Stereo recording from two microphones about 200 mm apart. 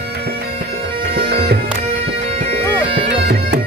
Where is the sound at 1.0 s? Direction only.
50° right (ahead or behind).